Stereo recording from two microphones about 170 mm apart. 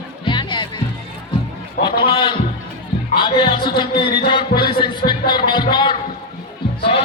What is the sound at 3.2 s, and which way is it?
Music, 30° left (ahead or behind).